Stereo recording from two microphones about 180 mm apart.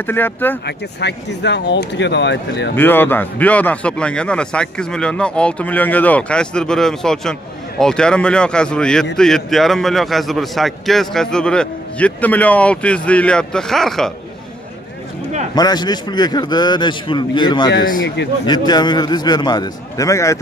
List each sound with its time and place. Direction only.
0.0 s speech: 10° left (ahead or behind)
0.7 s speech: 70° left (ahead or behind)
2.7 s a man's voice: 10° left (ahead or behind)
15.5 s a man's voice: 20° left (ahead or behind)
18.0 s speech: 75° left (ahead or behind)
18.4 s a man's voice: 25° left (ahead or behind)